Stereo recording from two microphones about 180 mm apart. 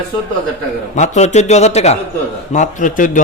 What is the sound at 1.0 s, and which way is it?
A man's voice, 40° left (ahead or behind).